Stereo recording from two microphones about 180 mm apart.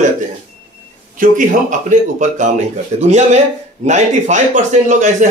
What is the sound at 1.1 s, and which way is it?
Speech, 45° right (ahead or behind).